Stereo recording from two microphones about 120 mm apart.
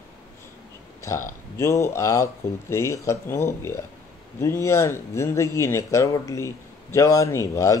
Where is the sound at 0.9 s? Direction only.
25° left (ahead or behind).